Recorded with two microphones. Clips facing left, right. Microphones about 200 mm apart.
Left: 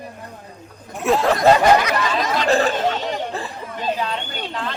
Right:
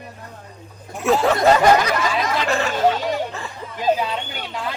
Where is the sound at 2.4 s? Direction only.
35° left (ahead or behind).